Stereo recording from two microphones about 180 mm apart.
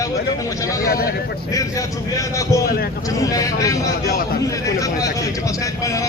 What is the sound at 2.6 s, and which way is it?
Speech, 55° left (ahead or behind).